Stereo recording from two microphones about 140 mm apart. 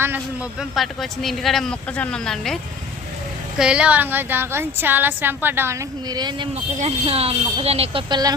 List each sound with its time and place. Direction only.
0.6 s speech: centre (ahead or behind)
3.6 s a woman's voice: 5° right (ahead or behind)
6.1 s speech: 30° right (ahead or behind)
6.7 s speech: 45° right (ahead or behind)
8.1 s speech: 25° right (ahead or behind)